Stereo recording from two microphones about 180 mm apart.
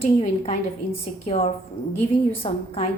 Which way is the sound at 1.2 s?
35° left (ahead or behind).